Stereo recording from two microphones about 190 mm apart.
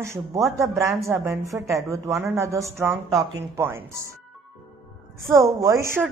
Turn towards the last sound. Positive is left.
turn(degrees=-15)  # may be behind; listen again after turning